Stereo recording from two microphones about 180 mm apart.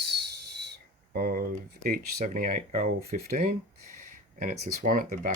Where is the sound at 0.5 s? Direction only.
70° right (ahead or behind); by 2.9 s 45° right (ahead or behind).